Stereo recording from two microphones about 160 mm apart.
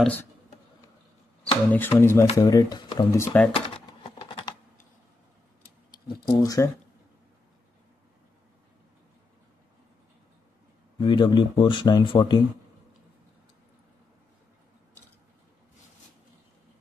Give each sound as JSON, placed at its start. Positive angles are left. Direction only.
{"t": 0.0, "sound": "speech", "side_deg": 10}
{"t": 1.7, "sound": "speech", "side_deg": 15}
{"t": 3.1, "sound": "speech", "side_deg": 15}
{"t": 3.5, "sound": "typing", "side_deg": 35}
{"t": 6.3, "sound": "speech", "side_deg": 20}
{"t": 11.0, "sound": "speech", "side_deg": 30}